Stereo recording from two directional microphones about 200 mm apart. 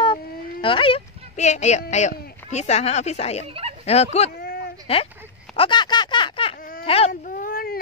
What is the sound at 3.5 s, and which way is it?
Speech, 30° right (ahead or behind).